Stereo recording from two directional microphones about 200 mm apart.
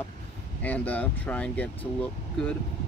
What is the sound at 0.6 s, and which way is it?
Speech, 10° left (ahead or behind).